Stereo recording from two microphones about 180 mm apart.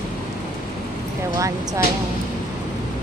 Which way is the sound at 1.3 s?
20° right (ahead or behind).